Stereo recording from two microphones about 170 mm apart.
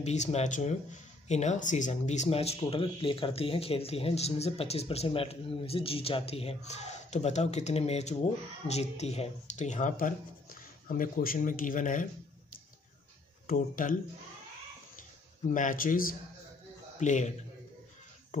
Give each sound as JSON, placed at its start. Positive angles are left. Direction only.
{"t": 0.0, "sound": "speech", "side_deg": 40}
{"t": 13.5, "sound": "speech", "side_deg": 50}
{"t": 15.5, "sound": "speech", "side_deg": 50}
{"t": 17.0, "sound": "speech", "side_deg": 45}